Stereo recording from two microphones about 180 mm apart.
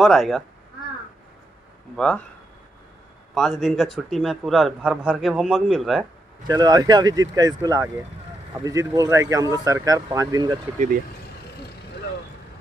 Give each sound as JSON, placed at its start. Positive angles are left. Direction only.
{"t": 0.0, "sound": "a man's voice", "side_deg": 0}
{"t": 2.0, "sound": "a man's voice", "side_deg": 5}
{"t": 3.3, "sound": "a man's voice", "side_deg": 0}
{"t": 6.4, "sound": "speech", "side_deg": -20}